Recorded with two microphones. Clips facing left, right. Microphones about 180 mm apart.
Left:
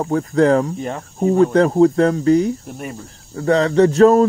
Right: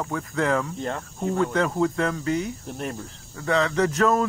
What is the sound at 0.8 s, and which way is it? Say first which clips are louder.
Speech: left 6 dB; 15° left (ahead or behind).